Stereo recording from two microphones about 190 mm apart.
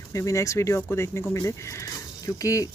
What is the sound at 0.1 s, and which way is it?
Speech, 15° left (ahead or behind).